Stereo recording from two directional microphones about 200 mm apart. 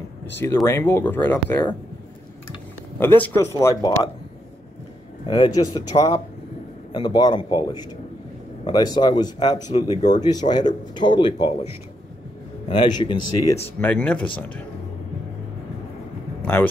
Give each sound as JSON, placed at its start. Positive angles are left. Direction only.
{"t": 0.7, "sound": "speech", "side_deg": 10}
{"t": 3.0, "sound": "speech", "side_deg": 10}
{"t": 5.3, "sound": "speech", "side_deg": 20}
{"t": 9.7, "sound": "speech", "side_deg": 35}
{"t": 10.0, "sound": "speech", "side_deg": 20}
{"t": 12.6, "sound": "speech", "side_deg": 20}
{"t": 13.7, "sound": "speech", "side_deg": 10}